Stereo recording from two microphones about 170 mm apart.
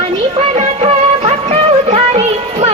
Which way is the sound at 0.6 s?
40° right (ahead or behind).